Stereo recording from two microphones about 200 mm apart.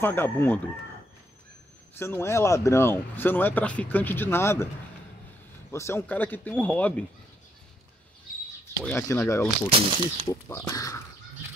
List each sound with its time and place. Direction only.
0.0 s speech: 10° left (ahead or behind)
2.0 s speech: 10° left (ahead or behind)
5.7 s speech: 10° left (ahead or behind)
8.7 s speech: 15° left (ahead or behind)
9.7 s speech: 25° right (ahead or behind)
10.2 s speech: 15° left (ahead or behind)